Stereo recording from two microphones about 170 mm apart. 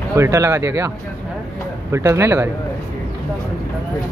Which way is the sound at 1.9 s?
15° right (ahead or behind).